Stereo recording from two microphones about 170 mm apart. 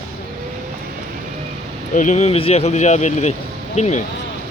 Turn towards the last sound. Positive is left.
turn(degrees=40)  # may be behind; listen again after turning